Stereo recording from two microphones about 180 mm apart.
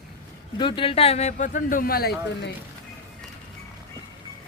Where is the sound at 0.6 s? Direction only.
25° left (ahead or behind); by 2.5 s 60° left (ahead or behind).